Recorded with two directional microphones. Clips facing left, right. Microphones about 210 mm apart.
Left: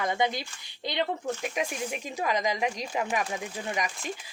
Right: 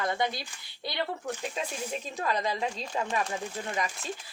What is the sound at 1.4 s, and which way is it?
Speech, 15° left (ahead or behind).